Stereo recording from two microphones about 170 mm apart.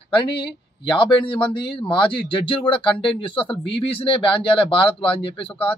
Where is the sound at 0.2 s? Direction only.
30° left (ahead or behind).